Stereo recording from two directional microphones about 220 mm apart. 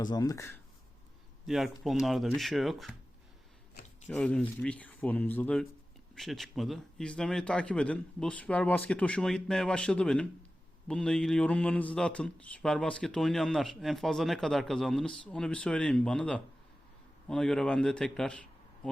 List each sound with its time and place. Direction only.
0.0 s speech: 15° left (ahead or behind)
1.5 s a man's voice: centre (ahead or behind)
4.1 s a man's voice: 5° left (ahead or behind)